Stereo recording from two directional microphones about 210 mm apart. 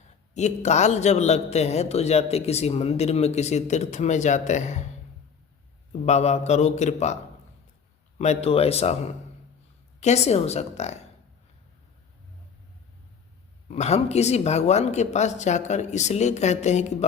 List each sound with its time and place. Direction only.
0.3 s a man's voice: 35° left (ahead or behind)
5.9 s a man's voice: 30° left (ahead or behind)
8.2 s speech: 30° left (ahead or behind)
10.0 s a man's voice: 30° left (ahead or behind)
13.7 s a man's voice: 30° left (ahead or behind)